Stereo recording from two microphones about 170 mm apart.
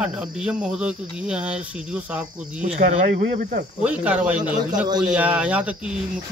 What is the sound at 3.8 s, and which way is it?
Speech, 5° right (ahead or behind).